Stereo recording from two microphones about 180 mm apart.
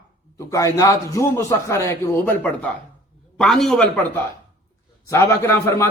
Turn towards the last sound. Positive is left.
turn(degrees=15)  # may be behind; listen again after turning